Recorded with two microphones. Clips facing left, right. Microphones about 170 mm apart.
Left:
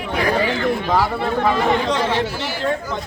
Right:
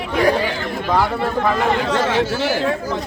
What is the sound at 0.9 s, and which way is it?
A man's voice, centre (ahead or behind).